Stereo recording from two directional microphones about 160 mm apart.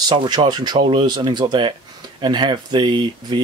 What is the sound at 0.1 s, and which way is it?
Speech, 30° right (ahead or behind).